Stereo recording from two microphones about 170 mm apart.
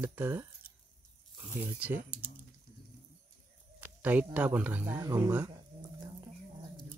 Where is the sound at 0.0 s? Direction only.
10° right (ahead or behind).